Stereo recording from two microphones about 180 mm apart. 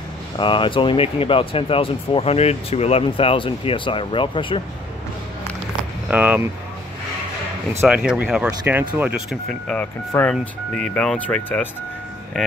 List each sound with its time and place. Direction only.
0.4 s speech: 25° left (ahead or behind)
6.0 s speech: 10° right (ahead or behind)
7.8 s speech: 5° right (ahead or behind)